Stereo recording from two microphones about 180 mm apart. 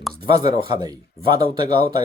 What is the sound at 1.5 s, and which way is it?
Speech, 25° right (ahead or behind).